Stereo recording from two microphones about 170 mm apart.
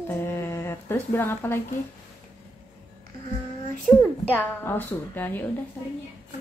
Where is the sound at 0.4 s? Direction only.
15° left (ahead or behind).